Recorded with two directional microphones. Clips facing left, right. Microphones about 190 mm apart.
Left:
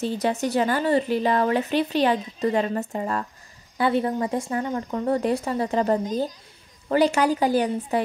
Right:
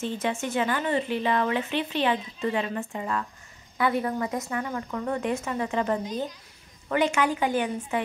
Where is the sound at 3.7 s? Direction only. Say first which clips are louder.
Left 3 dB; 30° left (ahead or behind).